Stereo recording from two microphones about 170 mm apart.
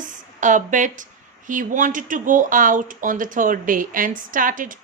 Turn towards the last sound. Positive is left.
turn(degrees=-50)  # may be behind; listen again after turning